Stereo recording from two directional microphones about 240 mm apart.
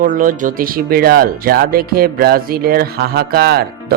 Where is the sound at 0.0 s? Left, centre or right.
Right.